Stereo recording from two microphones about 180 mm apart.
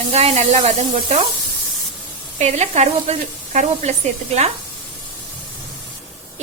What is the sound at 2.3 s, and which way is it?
A woman's voice, 40° right (ahead or behind).